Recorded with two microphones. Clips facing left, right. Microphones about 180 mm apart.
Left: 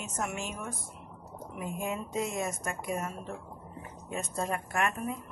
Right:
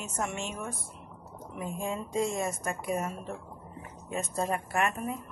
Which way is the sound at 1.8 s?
30° right (ahead or behind).